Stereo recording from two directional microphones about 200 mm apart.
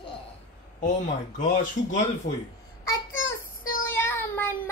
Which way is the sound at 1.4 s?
40° left (ahead or behind).